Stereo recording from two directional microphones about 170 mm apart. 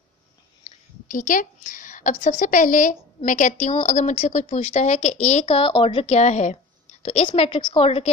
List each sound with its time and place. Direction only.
1.0 s a woman's voice: 50° left (ahead or behind); by 6.0 s 30° left (ahead or behind)
6.0 s a woman's voice: 40° left (ahead or behind)